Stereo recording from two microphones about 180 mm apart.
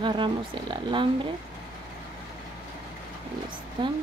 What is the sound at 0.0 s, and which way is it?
Speech, 25° right (ahead or behind).